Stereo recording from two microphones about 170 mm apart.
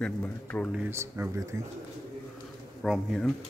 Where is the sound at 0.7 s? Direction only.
10° right (ahead or behind).